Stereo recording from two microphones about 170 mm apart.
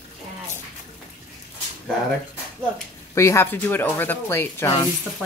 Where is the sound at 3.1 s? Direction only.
15° left (ahead or behind).